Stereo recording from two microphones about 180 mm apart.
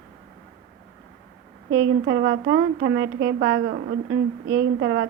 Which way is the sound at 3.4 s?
65° right (ahead or behind).